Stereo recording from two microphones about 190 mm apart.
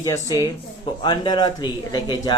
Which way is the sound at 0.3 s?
20° left (ahead or behind).